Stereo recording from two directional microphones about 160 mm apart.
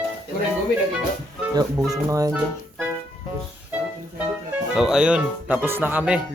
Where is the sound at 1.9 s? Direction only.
20° right (ahead or behind).